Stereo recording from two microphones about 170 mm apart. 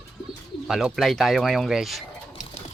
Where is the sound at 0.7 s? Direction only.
Centre (ahead or behind).